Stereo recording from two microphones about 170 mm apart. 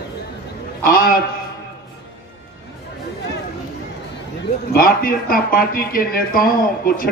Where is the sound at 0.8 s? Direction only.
60° left (ahead or behind).